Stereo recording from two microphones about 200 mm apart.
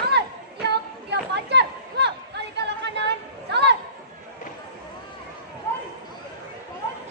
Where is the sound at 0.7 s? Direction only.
55° right (ahead or behind).